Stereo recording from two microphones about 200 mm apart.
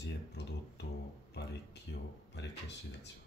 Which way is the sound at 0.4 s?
60° left (ahead or behind).